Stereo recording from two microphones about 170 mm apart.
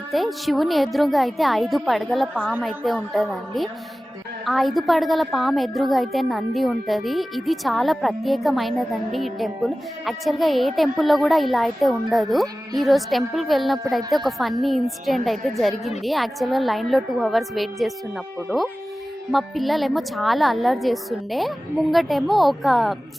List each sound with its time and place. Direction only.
0.1 s a woman's voice: centre (ahead or behind)